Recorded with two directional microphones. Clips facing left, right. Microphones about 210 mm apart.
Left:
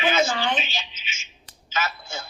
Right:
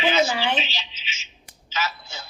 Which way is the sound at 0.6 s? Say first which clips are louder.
Left 1 dB; 50° left (ahead or behind).